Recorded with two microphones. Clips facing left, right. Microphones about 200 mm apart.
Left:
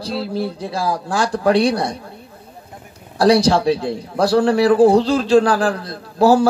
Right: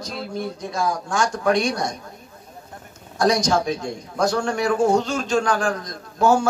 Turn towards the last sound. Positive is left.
turn(degrees=35)  # may be behind; listen again after turning